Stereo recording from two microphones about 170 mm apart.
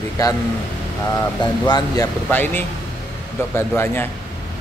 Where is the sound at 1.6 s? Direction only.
25° left (ahead or behind).